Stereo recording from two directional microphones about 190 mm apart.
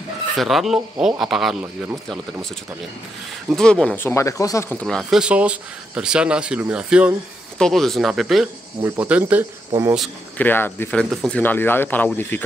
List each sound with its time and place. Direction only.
0.4 s speech: centre (ahead or behind)
3.4 s speech: 5° left (ahead or behind); by 9.9 s 15° right (ahead or behind)
9.9 s speech: 10° left (ahead or behind)